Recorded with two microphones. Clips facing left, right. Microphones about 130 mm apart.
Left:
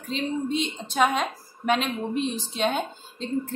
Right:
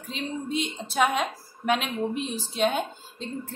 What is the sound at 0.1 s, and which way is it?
A woman's voice, 5° right (ahead or behind).